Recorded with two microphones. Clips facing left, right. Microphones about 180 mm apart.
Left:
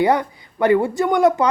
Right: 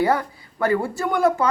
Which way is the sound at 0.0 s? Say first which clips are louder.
Left 3 dB; 20° left (ahead or behind).